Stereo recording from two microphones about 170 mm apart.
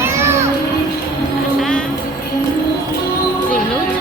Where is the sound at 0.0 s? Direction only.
15° right (ahead or behind).